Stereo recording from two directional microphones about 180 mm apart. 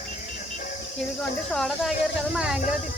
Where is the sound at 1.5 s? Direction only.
Centre (ahead or behind).